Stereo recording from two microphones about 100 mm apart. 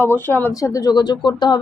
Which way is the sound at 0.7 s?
40° left (ahead or behind).